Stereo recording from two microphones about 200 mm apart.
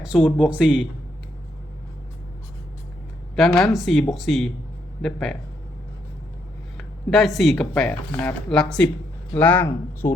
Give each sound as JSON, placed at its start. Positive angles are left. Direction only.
{"t": 0.0, "sound": "speech", "side_deg": 0}
{"t": 3.3, "sound": "speech", "side_deg": 0}
{"t": 6.7, "sound": "speech", "side_deg": 0}